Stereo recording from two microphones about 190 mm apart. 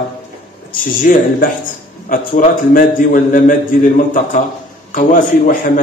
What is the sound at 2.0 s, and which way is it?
A man's voice, 45° left (ahead or behind).